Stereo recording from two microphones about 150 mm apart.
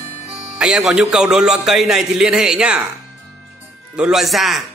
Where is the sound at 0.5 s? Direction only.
5° right (ahead or behind).